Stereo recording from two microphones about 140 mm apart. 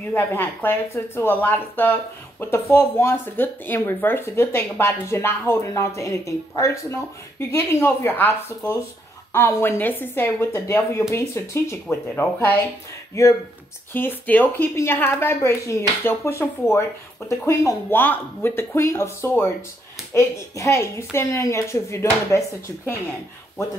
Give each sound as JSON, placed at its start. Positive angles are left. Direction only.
{"t": 0.1, "sound": "a woman's voice", "side_deg": 15}